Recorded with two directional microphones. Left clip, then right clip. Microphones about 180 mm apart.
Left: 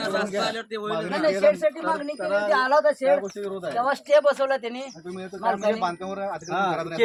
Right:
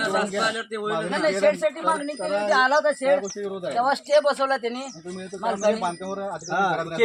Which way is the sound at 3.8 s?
40° left (ahead or behind).